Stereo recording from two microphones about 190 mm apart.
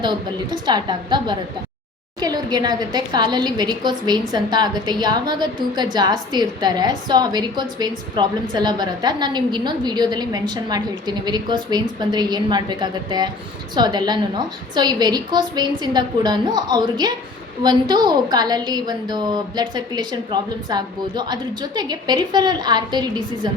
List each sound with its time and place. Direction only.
0.0 s a woman's voice: 25° right (ahead or behind)